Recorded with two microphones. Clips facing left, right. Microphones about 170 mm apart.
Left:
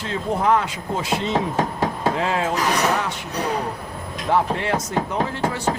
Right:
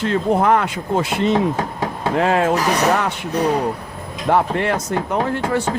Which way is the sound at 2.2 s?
60° right (ahead or behind).